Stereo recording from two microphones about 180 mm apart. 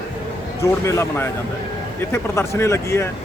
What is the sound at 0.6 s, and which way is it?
Speech, 15° left (ahead or behind).